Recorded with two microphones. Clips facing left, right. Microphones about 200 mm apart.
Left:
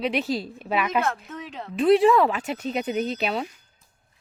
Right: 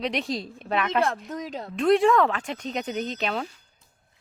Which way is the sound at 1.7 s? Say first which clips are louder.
Left 2 dB; centre (ahead or behind).